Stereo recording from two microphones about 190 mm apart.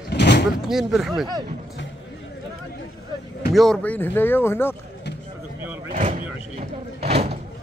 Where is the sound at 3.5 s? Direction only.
Centre (ahead or behind).